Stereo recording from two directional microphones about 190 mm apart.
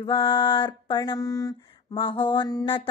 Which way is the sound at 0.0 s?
25° left (ahead or behind).